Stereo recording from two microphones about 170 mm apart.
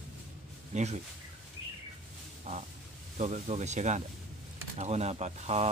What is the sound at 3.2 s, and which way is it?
Speech, 40° right (ahead or behind).